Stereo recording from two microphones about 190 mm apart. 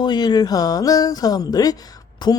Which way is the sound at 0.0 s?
20° left (ahead or behind).